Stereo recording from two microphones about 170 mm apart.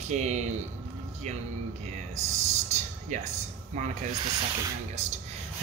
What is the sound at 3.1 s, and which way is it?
Ratchet, 45° right (ahead or behind).